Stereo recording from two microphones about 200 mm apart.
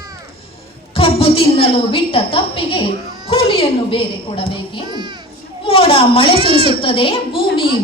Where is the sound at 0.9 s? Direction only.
30° left (ahead or behind).